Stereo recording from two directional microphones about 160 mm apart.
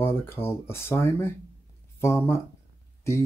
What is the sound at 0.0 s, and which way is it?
Speech, 15° left (ahead or behind).